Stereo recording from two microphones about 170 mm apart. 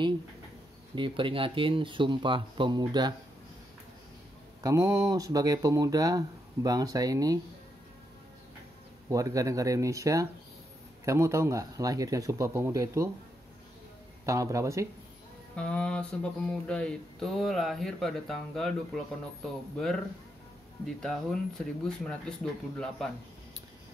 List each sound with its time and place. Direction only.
0.9 s speech: 30° right (ahead or behind)
4.6 s speech: 20° right (ahead or behind)
9.1 s speech: 20° right (ahead or behind)
14.2 s speech: 20° right (ahead or behind)
15.5 s speech: 5° left (ahead or behind)
20.8 s speech: 5° left (ahead or behind)